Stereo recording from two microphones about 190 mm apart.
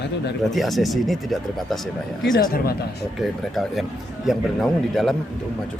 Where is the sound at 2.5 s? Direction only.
55° left (ahead or behind).